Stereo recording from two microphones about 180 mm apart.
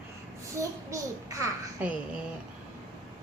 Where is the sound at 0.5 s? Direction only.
15° right (ahead or behind).